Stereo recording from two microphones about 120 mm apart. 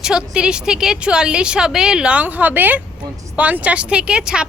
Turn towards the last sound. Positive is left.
turn(degrees=-5)  # may be behind; listen again after turning